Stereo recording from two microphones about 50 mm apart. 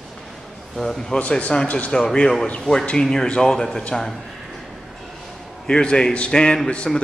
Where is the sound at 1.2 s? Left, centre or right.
Left.